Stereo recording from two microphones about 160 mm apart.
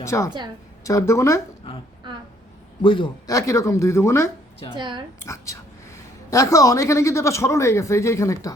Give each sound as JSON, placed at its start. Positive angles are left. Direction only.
{"t": 0.0, "sound": "speech", "side_deg": 20}
{"t": 2.8, "sound": "speech", "side_deg": 30}
{"t": 4.7, "sound": "a woman's voice", "side_deg": -30}
{"t": 5.2, "sound": "speech", "side_deg": 20}